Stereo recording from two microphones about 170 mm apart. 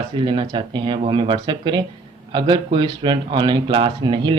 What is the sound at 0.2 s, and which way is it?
Speech, 30° right (ahead or behind).